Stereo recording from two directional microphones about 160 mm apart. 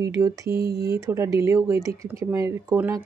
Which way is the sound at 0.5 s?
70° right (ahead or behind).